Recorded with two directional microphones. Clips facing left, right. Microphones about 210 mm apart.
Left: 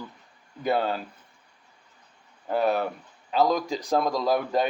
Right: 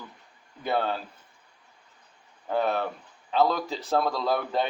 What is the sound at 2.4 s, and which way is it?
A man's voice, 10° left (ahead or behind).